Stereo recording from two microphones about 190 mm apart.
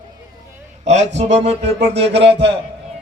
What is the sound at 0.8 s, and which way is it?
Speech, 35° right (ahead or behind).